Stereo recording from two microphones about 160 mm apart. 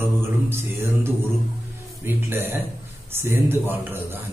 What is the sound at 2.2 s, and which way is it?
Mantra, 15° right (ahead or behind).